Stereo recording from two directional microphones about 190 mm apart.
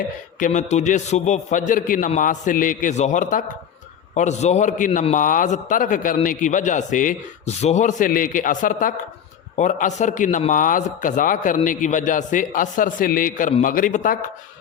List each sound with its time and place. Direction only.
0.3 s a man's voice: 40° left (ahead or behind)